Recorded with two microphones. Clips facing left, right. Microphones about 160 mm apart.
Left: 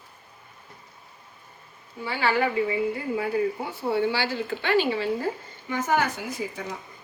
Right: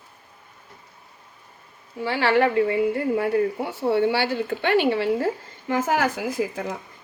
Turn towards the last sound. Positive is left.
turn(degrees=-90)